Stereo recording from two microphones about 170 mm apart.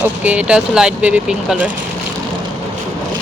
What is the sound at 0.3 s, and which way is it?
Speech, 5° right (ahead or behind).